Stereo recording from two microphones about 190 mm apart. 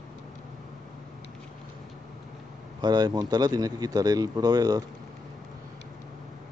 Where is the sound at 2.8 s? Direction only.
20° right (ahead or behind).